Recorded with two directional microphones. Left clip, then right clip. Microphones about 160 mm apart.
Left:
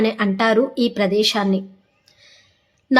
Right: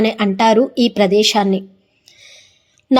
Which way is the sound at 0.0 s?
25° right (ahead or behind).